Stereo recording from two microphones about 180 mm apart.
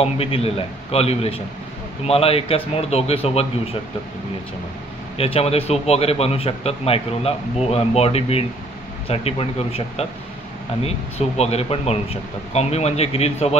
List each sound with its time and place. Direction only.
0.0 s a man's voice: 35° left (ahead or behind)
5.1 s a man's voice: 35° left (ahead or behind)